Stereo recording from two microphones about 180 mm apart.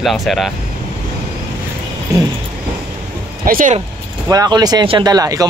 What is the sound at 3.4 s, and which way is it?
Speech, 50° right (ahead or behind).